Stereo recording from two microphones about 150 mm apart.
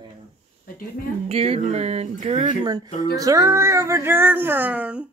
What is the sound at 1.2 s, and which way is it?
Speech, 40° right (ahead or behind).